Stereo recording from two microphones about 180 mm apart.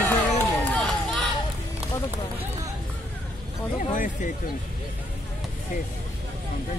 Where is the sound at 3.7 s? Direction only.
45° left (ahead or behind).